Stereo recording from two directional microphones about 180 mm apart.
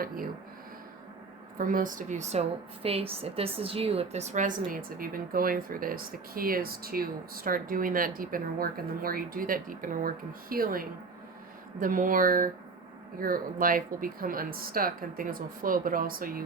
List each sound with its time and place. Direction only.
1.5 s a woman's voice: 50° right (ahead or behind)